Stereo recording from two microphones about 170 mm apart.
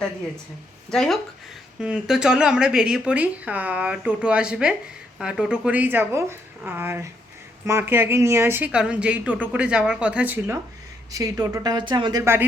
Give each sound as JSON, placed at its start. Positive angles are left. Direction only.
{"t": 0.9, "sound": "speech", "side_deg": 5}